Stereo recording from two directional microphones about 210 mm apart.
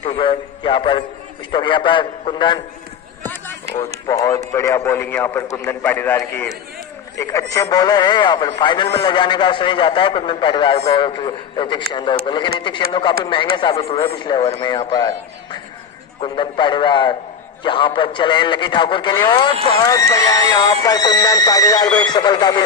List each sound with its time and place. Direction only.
0.0 s speech: 25° left (ahead or behind)
4.1 s speech: 15° left (ahead or behind)